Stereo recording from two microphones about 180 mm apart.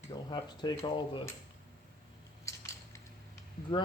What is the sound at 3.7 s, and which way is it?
Speech, 30° left (ahead or behind).